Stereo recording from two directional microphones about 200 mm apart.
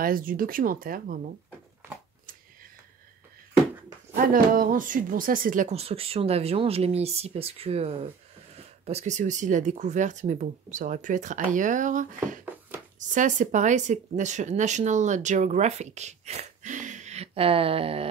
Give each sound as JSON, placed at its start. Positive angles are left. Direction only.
{"t": 0.0, "sound": "speech", "side_deg": -45}
{"t": 4.1, "sound": "speech", "side_deg": -45}